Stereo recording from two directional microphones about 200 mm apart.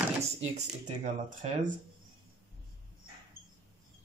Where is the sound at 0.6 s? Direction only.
35° right (ahead or behind).